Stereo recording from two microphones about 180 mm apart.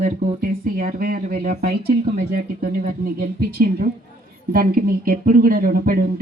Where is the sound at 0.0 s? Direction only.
50° right (ahead or behind).